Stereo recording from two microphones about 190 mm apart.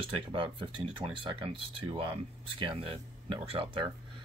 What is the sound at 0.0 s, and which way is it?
Speech, 25° right (ahead or behind).